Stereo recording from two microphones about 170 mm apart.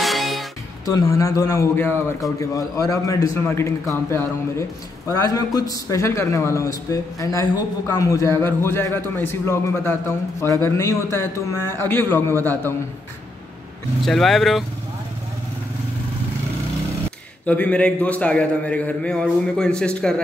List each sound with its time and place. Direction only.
0.0 s music: centre (ahead or behind)
0.8 s a man's voice: 20° left (ahead or behind)
14.0 s speech: centre (ahead or behind)
17.5 s a man's voice: 10° left (ahead or behind)